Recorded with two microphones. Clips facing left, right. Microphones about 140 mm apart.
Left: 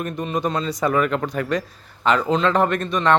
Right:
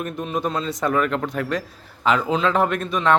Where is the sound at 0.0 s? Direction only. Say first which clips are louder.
Left 1 dB; centre (ahead or behind).